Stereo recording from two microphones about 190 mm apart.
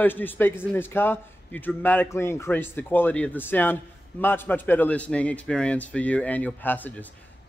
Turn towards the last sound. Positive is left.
turn(degrees=10)  # may be behind; listen again after turning